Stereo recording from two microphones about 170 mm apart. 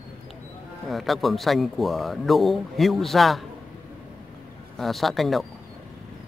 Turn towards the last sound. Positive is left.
turn(degrees=0)  # may be behind; listen again after turning